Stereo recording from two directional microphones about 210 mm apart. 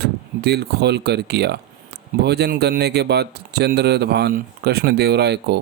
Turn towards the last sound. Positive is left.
turn(degrees=-50)  # may be behind; listen again after turning